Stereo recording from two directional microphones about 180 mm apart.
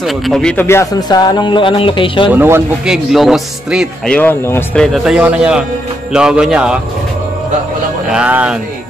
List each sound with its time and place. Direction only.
0.0 s speech: 5° left (ahead or behind); by 2.3 s 30° left (ahead or behind)
2.3 s speech: 10° right (ahead or behind)
3.1 s speech: centre (ahead or behind)
4.2 s speech: 10° left (ahead or behind)
4.8 s speech: centre (ahead or behind)
8.1 s speech: 5° right (ahead or behind)